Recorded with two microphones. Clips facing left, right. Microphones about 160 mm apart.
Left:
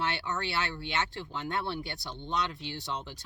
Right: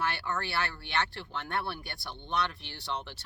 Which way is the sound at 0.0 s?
20° left (ahead or behind).